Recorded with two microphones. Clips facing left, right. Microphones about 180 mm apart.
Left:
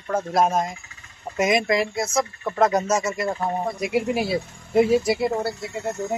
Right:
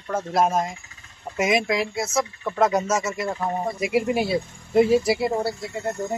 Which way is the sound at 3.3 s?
10° left (ahead or behind).